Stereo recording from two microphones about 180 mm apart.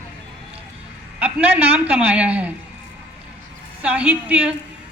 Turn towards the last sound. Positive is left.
turn(degrees=-5)  # may be behind; listen again after turning